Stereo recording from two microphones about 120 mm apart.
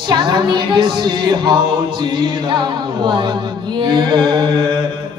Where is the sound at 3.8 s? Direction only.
40° right (ahead or behind).